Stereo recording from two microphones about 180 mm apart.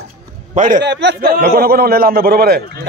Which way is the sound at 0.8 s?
70° right (ahead or behind).